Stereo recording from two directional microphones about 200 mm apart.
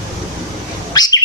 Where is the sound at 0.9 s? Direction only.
20° left (ahead or behind).